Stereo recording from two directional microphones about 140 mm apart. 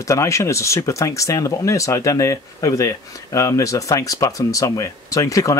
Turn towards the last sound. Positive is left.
turn(degrees=25)  # may be behind; listen again after turning